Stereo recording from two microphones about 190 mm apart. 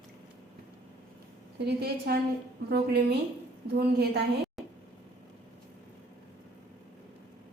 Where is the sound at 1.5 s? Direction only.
60° right (ahead or behind).